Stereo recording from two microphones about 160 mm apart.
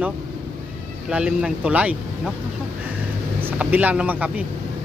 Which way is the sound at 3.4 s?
10° right (ahead or behind).